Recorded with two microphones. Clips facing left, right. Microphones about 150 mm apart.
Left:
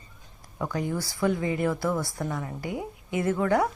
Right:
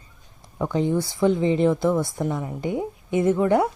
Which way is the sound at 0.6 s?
25° right (ahead or behind).